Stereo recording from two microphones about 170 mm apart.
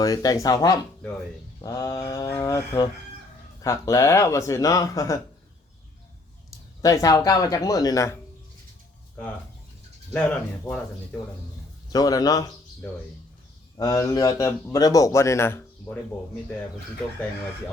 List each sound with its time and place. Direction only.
0.0 s a man's voice: 20° left (ahead or behind)
6.8 s a man's voice: 20° left (ahead or behind)
10.1 s speech: 10° left (ahead or behind)
11.9 s a man's voice: 20° left (ahead or behind)
13.7 s a man's voice: 20° left (ahead or behind)